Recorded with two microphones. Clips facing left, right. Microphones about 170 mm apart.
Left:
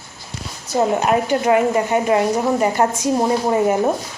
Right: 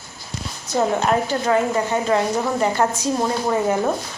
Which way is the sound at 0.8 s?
15° left (ahead or behind).